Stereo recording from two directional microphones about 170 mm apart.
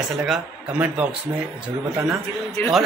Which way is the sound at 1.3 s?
25° right (ahead or behind).